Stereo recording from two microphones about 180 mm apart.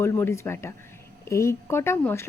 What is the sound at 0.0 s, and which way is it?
A woman's voice, 15° left (ahead or behind).